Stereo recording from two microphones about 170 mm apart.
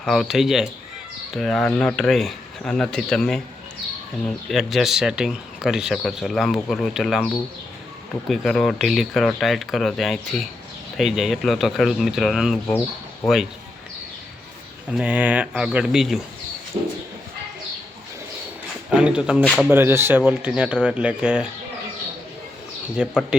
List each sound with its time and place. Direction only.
0.0 s speech: centre (ahead or behind)
4.4 s speech: centre (ahead or behind)
8.3 s speech: 5° left (ahead or behind)
14.8 s speech: 5° right (ahead or behind)
16.7 s speech: 30° right (ahead or behind)
18.9 s speech: 5° right (ahead or behind)
23.0 s speech: 5° right (ahead or behind)